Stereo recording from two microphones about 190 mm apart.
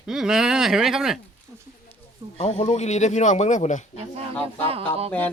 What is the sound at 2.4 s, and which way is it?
Speech, 35° left (ahead or behind).